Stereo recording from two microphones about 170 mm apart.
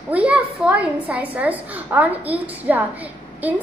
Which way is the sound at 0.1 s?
10° right (ahead or behind).